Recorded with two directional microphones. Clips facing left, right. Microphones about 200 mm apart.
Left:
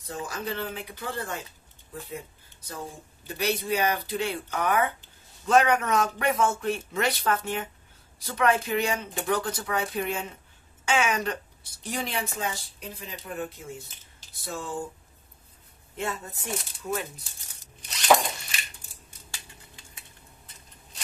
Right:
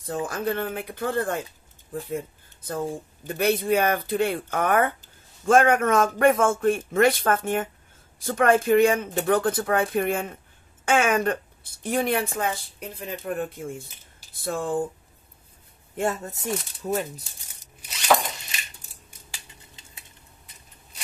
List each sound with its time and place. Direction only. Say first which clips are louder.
0.0 s speech: right 7 dB; 50° right (ahead or behind)
16.0 s speech: right 6 dB; 50° right (ahead or behind)
17.7 s zipper: left 1 dB; 5° right (ahead or behind)